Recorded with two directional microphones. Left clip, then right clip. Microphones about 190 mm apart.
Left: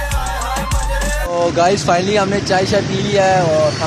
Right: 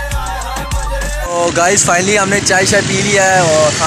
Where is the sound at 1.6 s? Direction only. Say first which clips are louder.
Right 2 dB; 10° right (ahead or behind).